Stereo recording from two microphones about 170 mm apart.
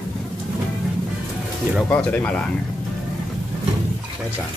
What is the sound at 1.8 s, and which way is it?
Speech, 5° left (ahead or behind).